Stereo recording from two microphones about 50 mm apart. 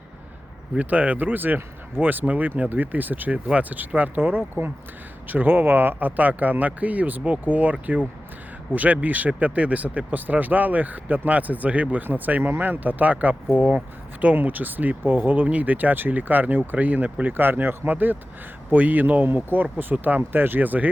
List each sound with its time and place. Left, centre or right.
0.8 s speech: right